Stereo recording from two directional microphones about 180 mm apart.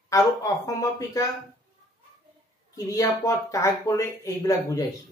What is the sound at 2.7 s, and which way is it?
Speech, 20° left (ahead or behind).